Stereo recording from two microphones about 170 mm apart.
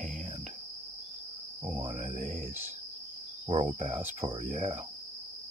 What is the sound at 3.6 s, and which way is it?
Speech, 45° right (ahead or behind).